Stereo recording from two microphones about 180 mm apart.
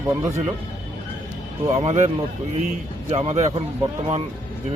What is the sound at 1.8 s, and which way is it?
Speech, 40° right (ahead or behind).